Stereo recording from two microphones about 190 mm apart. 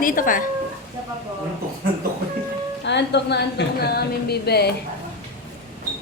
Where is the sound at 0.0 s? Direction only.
45° left (ahead or behind).